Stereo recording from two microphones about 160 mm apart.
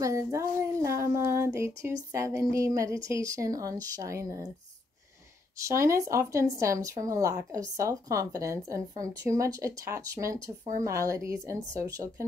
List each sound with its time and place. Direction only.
0.0 s a sound: 20° right (ahead or behind)
2.1 s speech: 20° right (ahead or behind)
5.7 s speech: 15° right (ahead or behind)